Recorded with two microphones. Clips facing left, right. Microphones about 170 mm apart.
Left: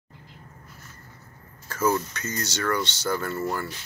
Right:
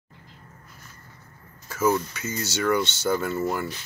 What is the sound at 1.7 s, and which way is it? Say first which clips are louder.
Speech: right 1 dB; 5° right (ahead or behind).